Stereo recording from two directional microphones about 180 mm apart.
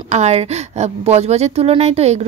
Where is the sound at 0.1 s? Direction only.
35° right (ahead or behind).